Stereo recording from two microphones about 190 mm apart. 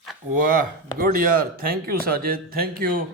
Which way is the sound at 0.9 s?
50° right (ahead or behind).